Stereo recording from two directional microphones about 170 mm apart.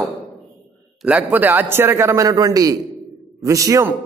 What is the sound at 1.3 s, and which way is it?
A man's voice, 10° right (ahead or behind).